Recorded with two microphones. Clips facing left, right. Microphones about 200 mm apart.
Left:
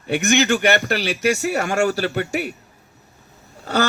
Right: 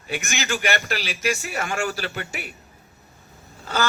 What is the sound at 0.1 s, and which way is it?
Speech, 60° left (ahead or behind).